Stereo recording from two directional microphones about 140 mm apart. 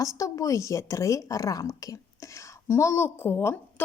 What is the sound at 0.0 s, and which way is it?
Speech, 20° left (ahead or behind).